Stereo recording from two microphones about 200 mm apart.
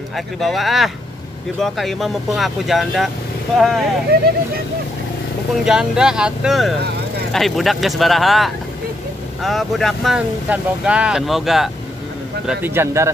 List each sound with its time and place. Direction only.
0.1 s speech: centre (ahead or behind)
4.1 s speech: 50° right (ahead or behind)
5.7 s speech: 5° right (ahead or behind)